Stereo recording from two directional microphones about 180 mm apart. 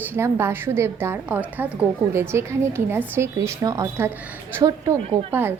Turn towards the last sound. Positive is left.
turn(degrees=-10)  # may be behind; listen again after turning